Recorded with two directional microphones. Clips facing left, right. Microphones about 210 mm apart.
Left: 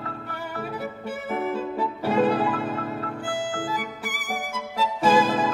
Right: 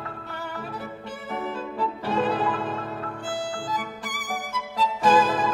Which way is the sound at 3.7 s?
10° left (ahead or behind).